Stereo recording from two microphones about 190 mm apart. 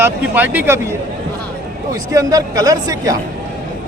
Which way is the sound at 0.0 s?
10° right (ahead or behind).